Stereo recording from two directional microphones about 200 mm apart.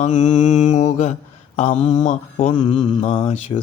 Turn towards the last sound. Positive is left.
turn(degrees=30)  # may be behind; listen again after turning